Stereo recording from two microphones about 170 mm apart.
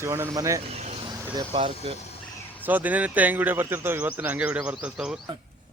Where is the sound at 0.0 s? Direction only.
15° right (ahead or behind).